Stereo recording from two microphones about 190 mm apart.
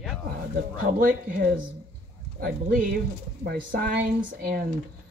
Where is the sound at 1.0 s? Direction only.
45° right (ahead or behind).